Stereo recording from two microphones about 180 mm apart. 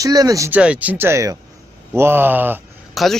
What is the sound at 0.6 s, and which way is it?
Speech, 5° right (ahead or behind).